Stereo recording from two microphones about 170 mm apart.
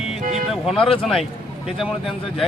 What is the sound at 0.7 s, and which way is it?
Speech, 30° left (ahead or behind).